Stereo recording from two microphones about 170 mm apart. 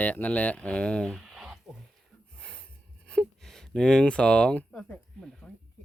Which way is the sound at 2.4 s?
5° left (ahead or behind).